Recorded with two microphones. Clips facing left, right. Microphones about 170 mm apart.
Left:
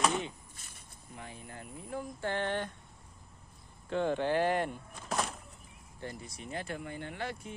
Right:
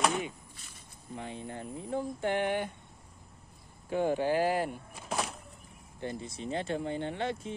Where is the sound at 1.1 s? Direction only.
25° right (ahead or behind).